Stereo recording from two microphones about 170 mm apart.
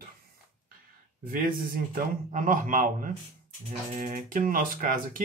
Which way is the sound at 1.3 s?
55° right (ahead or behind).